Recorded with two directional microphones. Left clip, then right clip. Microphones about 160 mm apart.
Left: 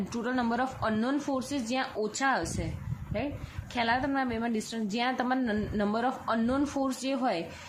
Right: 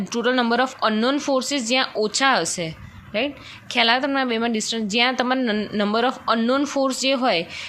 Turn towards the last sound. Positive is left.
turn(degrees=-25)  # may be behind; listen again after turning